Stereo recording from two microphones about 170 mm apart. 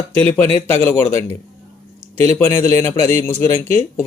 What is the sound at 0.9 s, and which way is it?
Speech, 15° left (ahead or behind).